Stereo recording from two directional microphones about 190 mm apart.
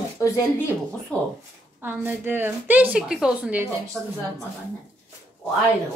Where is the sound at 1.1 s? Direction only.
5° left (ahead or behind).